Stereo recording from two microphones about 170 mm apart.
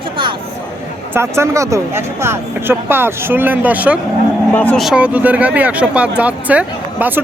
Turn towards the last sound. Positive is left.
turn(degrees=-10)  # may be behind; listen again after turning